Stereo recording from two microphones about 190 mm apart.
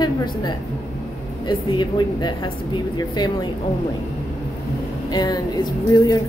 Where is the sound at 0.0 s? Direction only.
20° left (ahead or behind).